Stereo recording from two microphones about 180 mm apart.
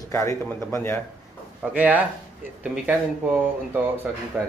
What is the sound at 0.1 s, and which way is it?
Speech, 15° left (ahead or behind).